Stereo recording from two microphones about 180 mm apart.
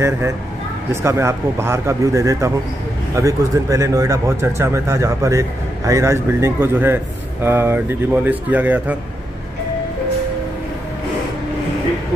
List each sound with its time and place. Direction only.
1.0 s speech: 15° right (ahead or behind)